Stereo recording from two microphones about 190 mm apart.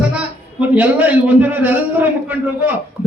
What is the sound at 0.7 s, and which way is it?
A man's voice, 10° right (ahead or behind).